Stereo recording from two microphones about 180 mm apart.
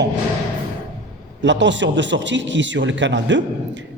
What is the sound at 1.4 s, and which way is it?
A man's voice, 90° right.